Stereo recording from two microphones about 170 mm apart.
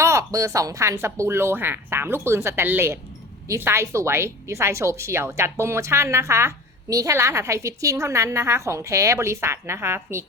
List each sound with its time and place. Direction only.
0.0 s a woman's voice: 15° right (ahead or behind)